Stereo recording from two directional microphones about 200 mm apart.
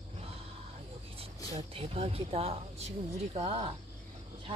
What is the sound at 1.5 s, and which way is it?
Speech, 30° right (ahead or behind).